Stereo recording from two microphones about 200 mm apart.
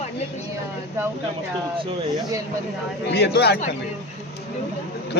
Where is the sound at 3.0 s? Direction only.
55° left (ahead or behind).